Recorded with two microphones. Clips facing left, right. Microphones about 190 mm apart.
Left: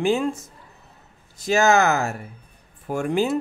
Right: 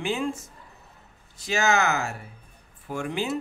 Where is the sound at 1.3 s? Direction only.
45° left (ahead or behind).